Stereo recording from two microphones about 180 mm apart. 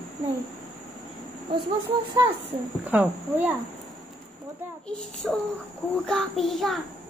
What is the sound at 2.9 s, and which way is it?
Speech, 10° right (ahead or behind).